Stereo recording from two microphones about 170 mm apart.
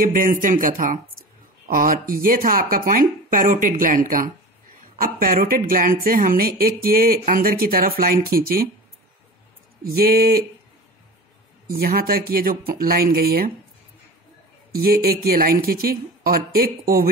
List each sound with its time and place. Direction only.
0.0 s a woman's voice: 55° right (ahead or behind)
9.8 s a woman's voice: 60° right (ahead or behind)
11.8 s a woman's voice: 60° right (ahead or behind)
14.8 s a woman's voice: 65° right (ahead or behind)